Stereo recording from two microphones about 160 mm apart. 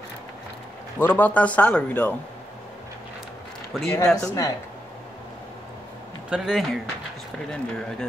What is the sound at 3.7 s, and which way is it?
Speech, 5° left (ahead or behind).